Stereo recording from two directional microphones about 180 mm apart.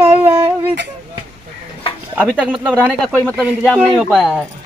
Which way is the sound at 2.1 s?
5° right (ahead or behind).